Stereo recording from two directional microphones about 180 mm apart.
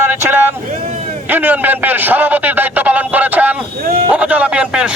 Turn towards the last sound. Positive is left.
turn(degrees=-5)  # may be behind; listen again after turning